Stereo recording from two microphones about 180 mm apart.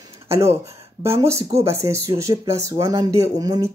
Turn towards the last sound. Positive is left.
turn(degrees=-20)  # may be behind; listen again after turning